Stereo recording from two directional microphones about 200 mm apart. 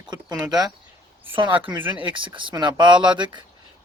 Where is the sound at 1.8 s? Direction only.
25° right (ahead or behind).